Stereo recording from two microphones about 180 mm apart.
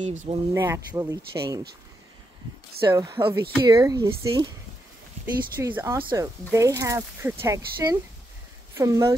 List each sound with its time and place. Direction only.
0.0 s speech: 40° right (ahead or behind)
0.6 s speech: 15° right (ahead or behind)
2.9 s speech: 15° right (ahead or behind)